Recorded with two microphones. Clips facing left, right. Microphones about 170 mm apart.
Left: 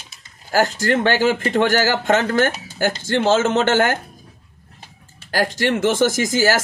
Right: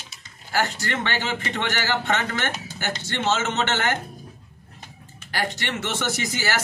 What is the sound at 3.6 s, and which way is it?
Speech, 50° left (ahead or behind).